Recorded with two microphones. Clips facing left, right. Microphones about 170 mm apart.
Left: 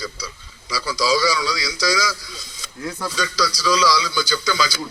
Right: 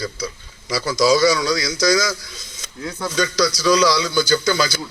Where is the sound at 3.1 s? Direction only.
50° right (ahead or behind).